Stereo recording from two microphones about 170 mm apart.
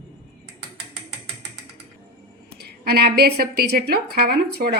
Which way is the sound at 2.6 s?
70° right (ahead or behind).